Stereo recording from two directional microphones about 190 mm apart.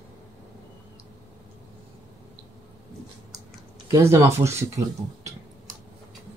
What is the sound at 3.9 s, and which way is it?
Speech, 15° right (ahead or behind).